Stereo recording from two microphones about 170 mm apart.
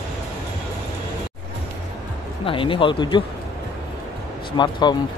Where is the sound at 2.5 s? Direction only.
30° left (ahead or behind).